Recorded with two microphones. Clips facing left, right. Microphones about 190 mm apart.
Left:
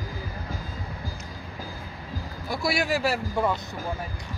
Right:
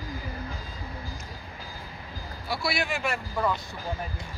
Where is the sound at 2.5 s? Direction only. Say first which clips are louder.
Left 4 dB; 45° left (ahead or behind).